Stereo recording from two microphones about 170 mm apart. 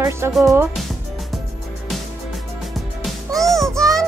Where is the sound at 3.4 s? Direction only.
Centre (ahead or behind).